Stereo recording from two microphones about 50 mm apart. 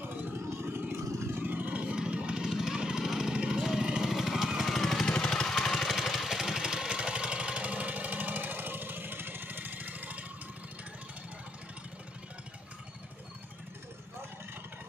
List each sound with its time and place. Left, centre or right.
0.0 s vehicle: right; by 4.7 s centre
4.7 s vehicle: centre; by 10.2 s right